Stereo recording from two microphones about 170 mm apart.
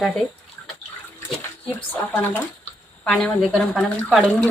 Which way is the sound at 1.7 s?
10° left (ahead or behind).